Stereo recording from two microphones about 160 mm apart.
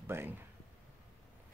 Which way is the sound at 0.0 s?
15° right (ahead or behind).